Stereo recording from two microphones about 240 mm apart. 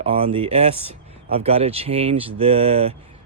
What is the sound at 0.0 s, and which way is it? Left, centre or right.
Speech, right.